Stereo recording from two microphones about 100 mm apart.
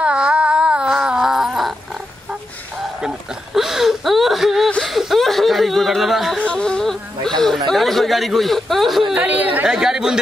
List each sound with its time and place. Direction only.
0.0 s a sound: 10° right (ahead or behind)
3.5 s whimper: 5° right (ahead or behind)
4.6 s a sound: 5° left (ahead or behind)
6.4 s speech: 10° left (ahead or behind)
9.1 s speech: 15° right (ahead or behind)
9.7 s speech: 5° right (ahead or behind)